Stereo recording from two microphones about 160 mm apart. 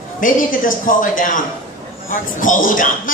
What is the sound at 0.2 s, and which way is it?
A man's voice, 60° left (ahead or behind).